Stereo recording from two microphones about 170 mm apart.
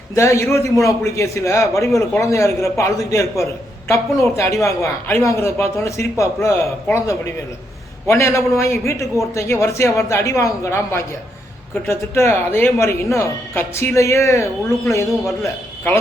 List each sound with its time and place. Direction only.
0.1 s a man's voice: 15° left (ahead or behind)
8.0 s a man's voice: 15° left (ahead or behind)